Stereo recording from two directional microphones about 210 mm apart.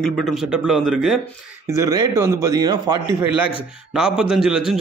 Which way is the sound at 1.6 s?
15° right (ahead or behind).